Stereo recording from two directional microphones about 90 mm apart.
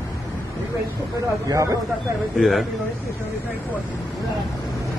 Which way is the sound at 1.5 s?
40° right (ahead or behind).